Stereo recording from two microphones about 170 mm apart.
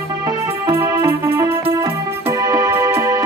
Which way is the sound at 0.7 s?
15° right (ahead or behind).